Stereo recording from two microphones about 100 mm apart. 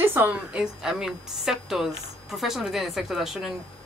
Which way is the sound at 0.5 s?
5° right (ahead or behind).